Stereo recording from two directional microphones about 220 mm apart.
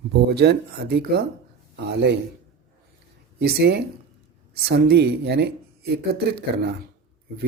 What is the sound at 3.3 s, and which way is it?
Speech, 45° right (ahead or behind).